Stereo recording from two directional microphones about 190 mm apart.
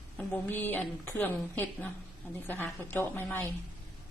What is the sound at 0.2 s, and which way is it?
A woman's voice, 10° left (ahead or behind).